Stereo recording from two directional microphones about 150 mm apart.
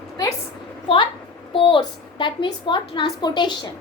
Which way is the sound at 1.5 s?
35° left (ahead or behind).